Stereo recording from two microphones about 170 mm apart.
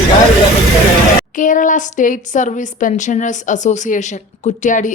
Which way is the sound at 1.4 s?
50° left (ahead or behind).